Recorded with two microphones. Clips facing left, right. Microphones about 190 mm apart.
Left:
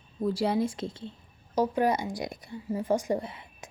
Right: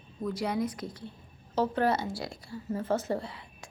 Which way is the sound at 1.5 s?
15° left (ahead or behind).